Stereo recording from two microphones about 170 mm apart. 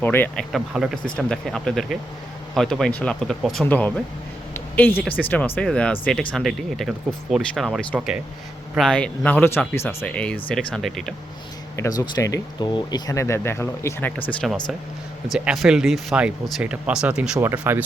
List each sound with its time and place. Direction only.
0.0 s speech: 10° left (ahead or behind)
0.5 s speech: 5° right (ahead or behind)
4.5 s a sound: 10° left (ahead or behind)
5.2 s speech: 10° left (ahead or behind)
11.8 s speech: 20° left (ahead or behind)
14.4 s speech: centre (ahead or behind)